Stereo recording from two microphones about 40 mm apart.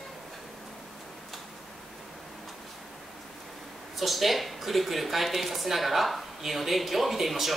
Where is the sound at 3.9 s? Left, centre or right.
Centre.